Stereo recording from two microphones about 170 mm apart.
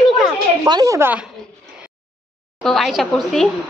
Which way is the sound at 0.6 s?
20° right (ahead or behind).